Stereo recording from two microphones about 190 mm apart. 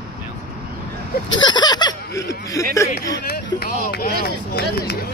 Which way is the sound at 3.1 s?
60° left (ahead or behind).